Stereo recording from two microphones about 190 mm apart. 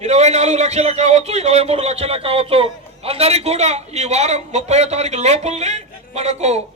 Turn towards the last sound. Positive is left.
turn(degrees=-35)  # may be behind; listen again after turning